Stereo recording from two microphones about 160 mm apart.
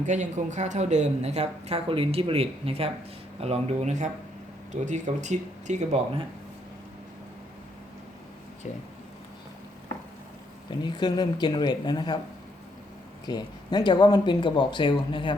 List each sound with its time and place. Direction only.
0.0 s speech: 50° right (ahead or behind)
10.7 s speech: 30° left (ahead or behind)
13.2 s speech: 25° left (ahead or behind)